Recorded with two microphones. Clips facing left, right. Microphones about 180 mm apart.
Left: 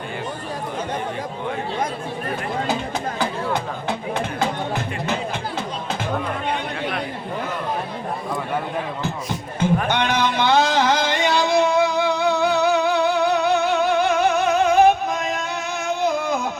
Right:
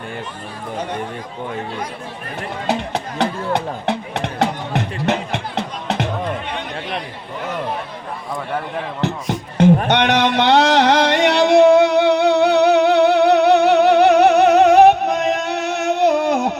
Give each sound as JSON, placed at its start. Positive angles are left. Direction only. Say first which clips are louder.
{"t": 2.6, "sound": "music", "louder": "right 2 dB", "side_deg": -75}
{"t": 9.6, "sound": "music", "louder": "right 7 dB", "side_deg": -75}